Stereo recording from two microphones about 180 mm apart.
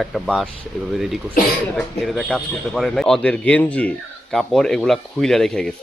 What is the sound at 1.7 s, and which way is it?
Speech, centre (ahead or behind).